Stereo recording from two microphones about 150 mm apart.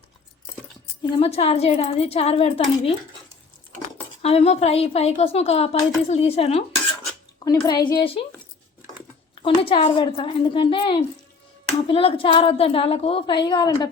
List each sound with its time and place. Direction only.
1.2 s a woman's voice: 40° left (ahead or behind)
4.2 s a woman's voice: 40° left (ahead or behind)
7.3 s a woman's voice: 25° left (ahead or behind)
9.3 s a woman's voice: 35° left (ahead or behind)